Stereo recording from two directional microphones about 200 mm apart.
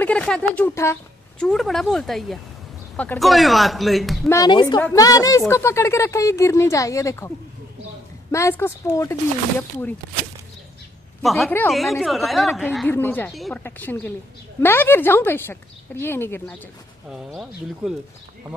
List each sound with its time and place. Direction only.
0.0 s a woman's voice: 5° left (ahead or behind)
4.3 s a woman's voice: 20° left (ahead or behind)
11.2 s a woman's voice: centre (ahead or behind)
17.1 s speech: centre (ahead or behind)